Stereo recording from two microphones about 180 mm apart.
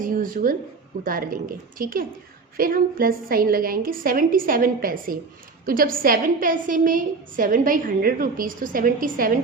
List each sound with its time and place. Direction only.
0.0 s a woman's voice: 50° right (ahead or behind)